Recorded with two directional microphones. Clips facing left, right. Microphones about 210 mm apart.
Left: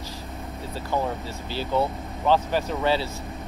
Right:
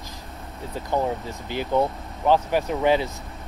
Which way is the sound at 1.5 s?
15° right (ahead or behind).